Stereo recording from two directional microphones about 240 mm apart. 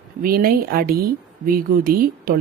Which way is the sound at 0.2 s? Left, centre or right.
Right.